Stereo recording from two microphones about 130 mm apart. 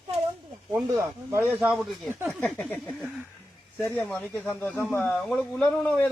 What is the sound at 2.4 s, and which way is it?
A man's voice, 10° left (ahead or behind).